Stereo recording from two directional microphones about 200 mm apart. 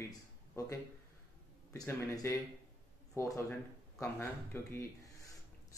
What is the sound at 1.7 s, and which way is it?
Speech, 15° left (ahead or behind).